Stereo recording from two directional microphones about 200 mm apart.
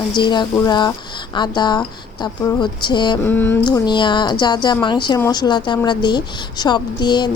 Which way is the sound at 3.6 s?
20° left (ahead or behind).